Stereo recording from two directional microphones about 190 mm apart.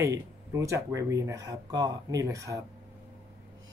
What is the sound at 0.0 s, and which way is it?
Speech, 15° right (ahead or behind).